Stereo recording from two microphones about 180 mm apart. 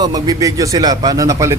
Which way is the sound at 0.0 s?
20° right (ahead or behind).